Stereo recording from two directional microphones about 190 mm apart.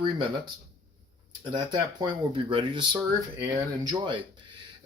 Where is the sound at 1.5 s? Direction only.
25° right (ahead or behind).